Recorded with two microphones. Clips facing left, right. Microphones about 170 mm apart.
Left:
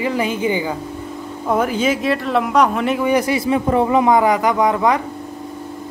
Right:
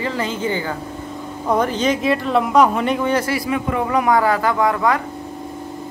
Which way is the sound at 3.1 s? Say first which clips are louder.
Left 3 dB; 20° left (ahead or behind).